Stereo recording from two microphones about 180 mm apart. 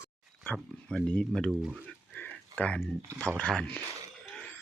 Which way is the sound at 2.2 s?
10° left (ahead or behind).